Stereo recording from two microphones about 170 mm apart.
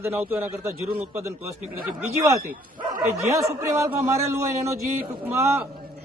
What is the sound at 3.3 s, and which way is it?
A man's voice, 20° right (ahead or behind).